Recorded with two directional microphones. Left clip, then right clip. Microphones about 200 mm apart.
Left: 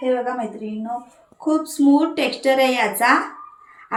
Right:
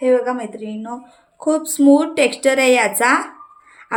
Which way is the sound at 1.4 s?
65° right (ahead or behind).